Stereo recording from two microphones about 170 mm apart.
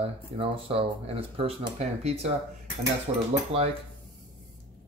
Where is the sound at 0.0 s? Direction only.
35° right (ahead or behind).